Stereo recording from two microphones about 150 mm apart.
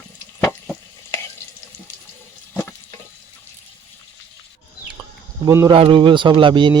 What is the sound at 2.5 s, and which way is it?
Frying, 15° left (ahead or behind).